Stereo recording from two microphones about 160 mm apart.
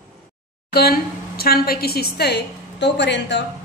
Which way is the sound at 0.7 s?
75° left (ahead or behind).